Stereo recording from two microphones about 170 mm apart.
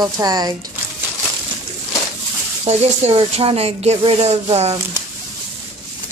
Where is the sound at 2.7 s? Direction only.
40° right (ahead or behind).